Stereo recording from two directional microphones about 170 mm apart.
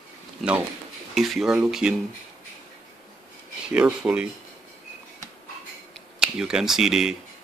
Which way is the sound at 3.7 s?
5° right (ahead or behind).